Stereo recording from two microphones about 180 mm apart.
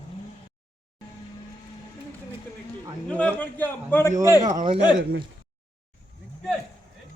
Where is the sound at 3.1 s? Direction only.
5° left (ahead or behind).